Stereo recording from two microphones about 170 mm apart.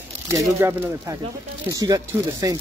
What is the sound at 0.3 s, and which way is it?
Speech, 15° right (ahead or behind).